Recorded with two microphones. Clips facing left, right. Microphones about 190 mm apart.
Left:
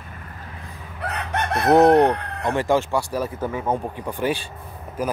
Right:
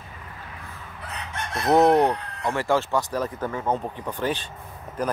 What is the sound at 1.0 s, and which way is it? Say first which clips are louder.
Chicken: left 9 dB; 65° left (ahead or behind).